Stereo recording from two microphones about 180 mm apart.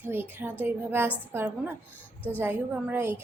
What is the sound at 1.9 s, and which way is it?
Speech, 10° left (ahead or behind).